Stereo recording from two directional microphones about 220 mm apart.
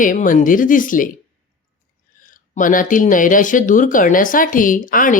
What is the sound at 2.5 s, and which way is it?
Speech, 35° left (ahead or behind).